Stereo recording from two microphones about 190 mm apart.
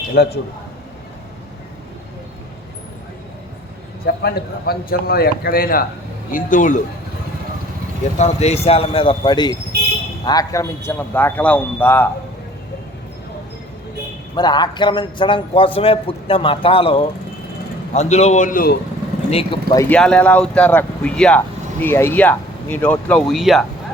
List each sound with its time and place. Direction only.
0.1 s a man's voice: 55° left (ahead or behind)
4.0 s a man's voice: 55° left (ahead or behind)
8.2 s a man's voice: 35° left (ahead or behind); by 12.0 s 10° left (ahead or behind)
14.3 s a man's voice: 25° left (ahead or behind); by 18.8 s 50° left (ahead or behind)
19.3 s a man's voice: 30° left (ahead or behind)
19.9 s speech: 5° left (ahead or behind)